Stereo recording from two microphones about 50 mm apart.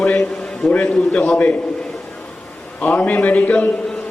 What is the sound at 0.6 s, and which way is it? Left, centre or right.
Speech, left.